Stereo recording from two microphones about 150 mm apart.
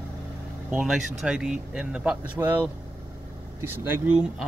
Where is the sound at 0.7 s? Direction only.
5° right (ahead or behind).